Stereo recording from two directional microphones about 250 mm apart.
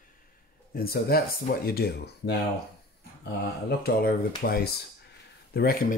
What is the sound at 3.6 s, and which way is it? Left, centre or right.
Speech, left.